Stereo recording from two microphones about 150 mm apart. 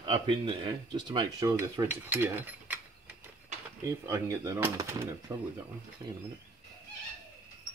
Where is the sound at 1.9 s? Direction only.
10° right (ahead or behind).